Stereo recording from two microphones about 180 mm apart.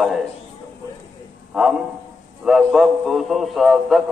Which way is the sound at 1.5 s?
5° right (ahead or behind).